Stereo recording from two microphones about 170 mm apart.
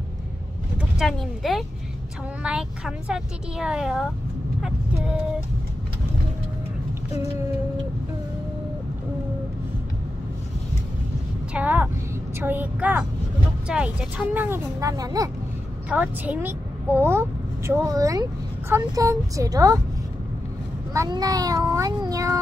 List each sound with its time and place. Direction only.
0.7 s a woman's voice: centre (ahead or behind)
11.5 s a woman's voice: 10° right (ahead or behind)
15.9 s a woman's voice: 10° right (ahead or behind)
18.7 s meow: 20° right (ahead or behind)
20.9 s meow: 20° right (ahead or behind)